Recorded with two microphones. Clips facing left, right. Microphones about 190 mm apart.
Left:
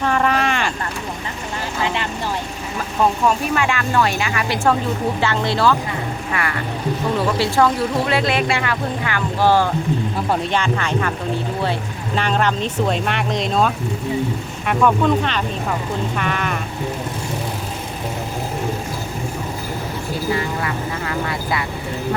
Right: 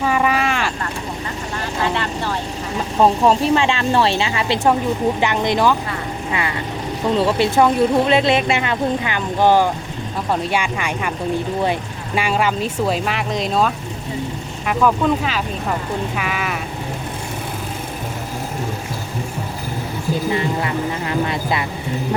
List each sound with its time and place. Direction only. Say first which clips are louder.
0.0 s vehicle: even; 5° right (ahead or behind)
1.8 s vehicle: right 2 dB; 15° left (ahead or behind)
2.7 s speech: right 3 dB; 30° right (ahead or behind); by 16.6 s 5° right (ahead or behind)
20.3 s vehicle: right 2 dB; 20° right (ahead or behind)